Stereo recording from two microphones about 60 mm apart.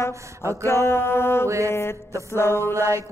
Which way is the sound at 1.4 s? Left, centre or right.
Right.